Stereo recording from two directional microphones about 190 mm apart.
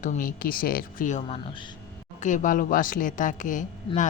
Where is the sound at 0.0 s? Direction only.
45° left (ahead or behind).